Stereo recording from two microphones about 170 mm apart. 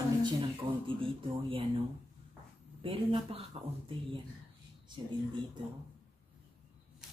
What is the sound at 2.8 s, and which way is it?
Speech, 35° right (ahead or behind).